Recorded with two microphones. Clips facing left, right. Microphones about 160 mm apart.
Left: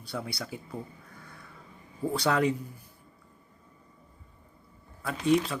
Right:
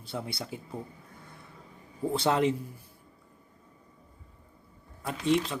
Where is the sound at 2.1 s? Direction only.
25° right (ahead or behind).